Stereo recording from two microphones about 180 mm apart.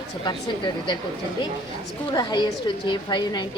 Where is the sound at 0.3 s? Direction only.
25° left (ahead or behind).